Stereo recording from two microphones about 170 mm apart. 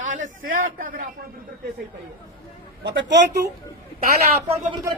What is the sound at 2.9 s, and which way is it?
Speech, 90° right.